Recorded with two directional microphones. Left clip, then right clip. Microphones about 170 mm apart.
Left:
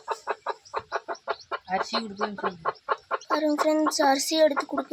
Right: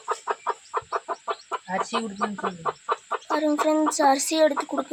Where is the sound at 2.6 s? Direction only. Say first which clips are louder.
Right 1 dB; 25° left (ahead or behind).